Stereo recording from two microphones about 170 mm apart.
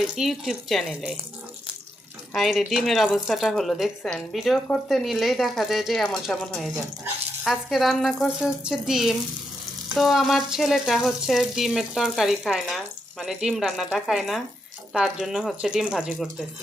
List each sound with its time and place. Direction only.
0.0 s frying: centre (ahead or behind)
2.3 s frying: centre (ahead or behind)